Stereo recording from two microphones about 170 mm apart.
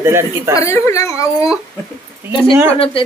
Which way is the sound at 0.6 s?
15° left (ahead or behind).